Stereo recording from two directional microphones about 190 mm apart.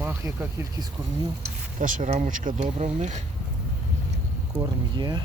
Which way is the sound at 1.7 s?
45° right (ahead or behind).